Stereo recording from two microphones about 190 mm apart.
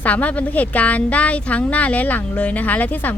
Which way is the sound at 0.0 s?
10° left (ahead or behind).